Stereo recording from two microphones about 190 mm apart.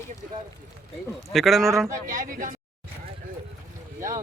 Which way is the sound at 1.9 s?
45° right (ahead or behind).